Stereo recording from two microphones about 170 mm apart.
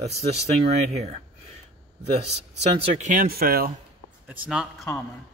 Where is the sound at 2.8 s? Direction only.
45° right (ahead or behind).